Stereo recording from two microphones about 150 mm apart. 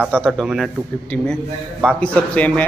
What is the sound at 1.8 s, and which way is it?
Speech, 5° left (ahead or behind).